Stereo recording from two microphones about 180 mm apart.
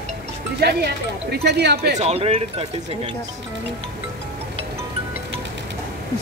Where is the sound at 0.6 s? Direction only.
65° right (ahead or behind).